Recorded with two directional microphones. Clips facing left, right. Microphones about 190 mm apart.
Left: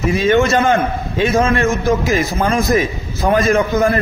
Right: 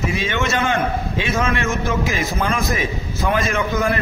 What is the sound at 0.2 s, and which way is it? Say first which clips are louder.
A man's voice: left 8 dB; 40° left (ahead or behind).